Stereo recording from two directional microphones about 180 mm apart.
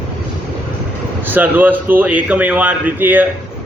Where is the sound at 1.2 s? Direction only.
10° right (ahead or behind).